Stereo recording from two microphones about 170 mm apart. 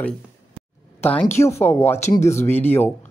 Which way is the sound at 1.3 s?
15° left (ahead or behind).